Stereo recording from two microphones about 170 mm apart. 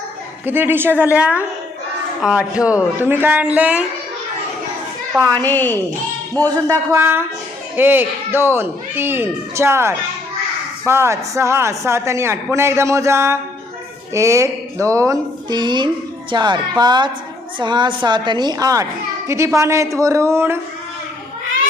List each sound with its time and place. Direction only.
0.4 s speech: 10° right (ahead or behind)
5.4 s a woman's voice: 10° left (ahead or behind)
6.7 s a woman's voice: 15° right (ahead or behind)